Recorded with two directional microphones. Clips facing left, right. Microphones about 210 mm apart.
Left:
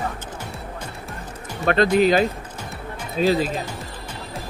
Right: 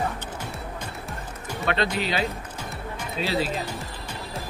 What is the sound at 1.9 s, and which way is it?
Speech, 45° left (ahead or behind).